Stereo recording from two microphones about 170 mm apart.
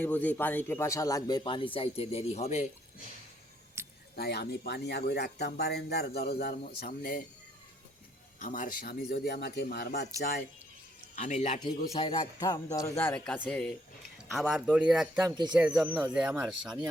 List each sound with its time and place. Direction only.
0.0 s speech: 10° left (ahead or behind); by 2.6 s 40° left (ahead or behind)
3.8 s a sound: 15° right (ahead or behind)
4.1 s speech: 70° left (ahead or behind)
8.4 s speech: 50° left (ahead or behind); by 10.4 s 70° left (ahead or behind)
11.1 s a man's voice: 45° left (ahead or behind)
11.9 s a man's voice: 30° left (ahead or behind); by 16.3 s 5° right (ahead or behind)
16.6 s speech: 25° right (ahead or behind)